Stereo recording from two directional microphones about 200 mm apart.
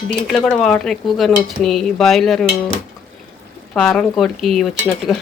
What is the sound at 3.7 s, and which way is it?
Stir, 5° left (ahead or behind).